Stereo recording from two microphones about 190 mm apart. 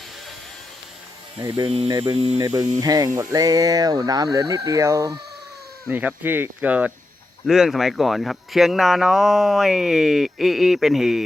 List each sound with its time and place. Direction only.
1.4 s speech: 25° right (ahead or behind)
2.8 s speech: 20° right (ahead or behind); by 11.2 s centre (ahead or behind)